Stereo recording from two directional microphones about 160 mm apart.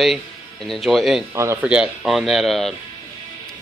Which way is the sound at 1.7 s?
5° right (ahead or behind).